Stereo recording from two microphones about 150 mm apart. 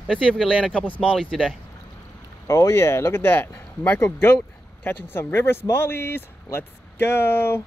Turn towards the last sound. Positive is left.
turn(degrees=15)  # may be behind; listen again after turning